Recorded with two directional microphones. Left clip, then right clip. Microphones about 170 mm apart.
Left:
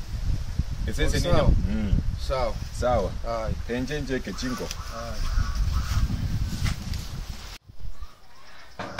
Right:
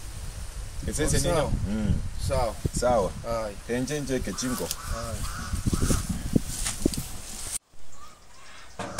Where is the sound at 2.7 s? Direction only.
15° left (ahead or behind).